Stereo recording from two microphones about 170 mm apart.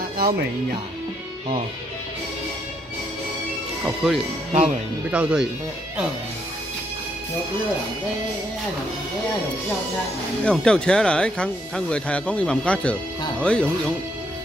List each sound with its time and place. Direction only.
3.8 s speech: centre (ahead or behind)
4.5 s speech: 40° right (ahead or behind)
5.1 s speech: 5° right (ahead or behind)
10.4 s speech: 5° left (ahead or behind)